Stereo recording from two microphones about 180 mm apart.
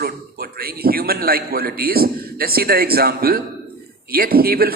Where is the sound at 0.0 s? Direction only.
55° right (ahead or behind).